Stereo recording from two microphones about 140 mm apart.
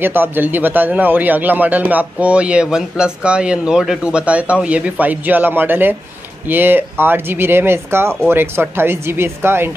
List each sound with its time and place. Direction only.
0.0 s speech: 15° right (ahead or behind)